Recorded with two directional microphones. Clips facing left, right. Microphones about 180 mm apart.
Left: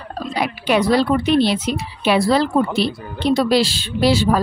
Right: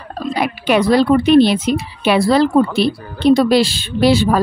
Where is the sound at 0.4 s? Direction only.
55° right (ahead or behind).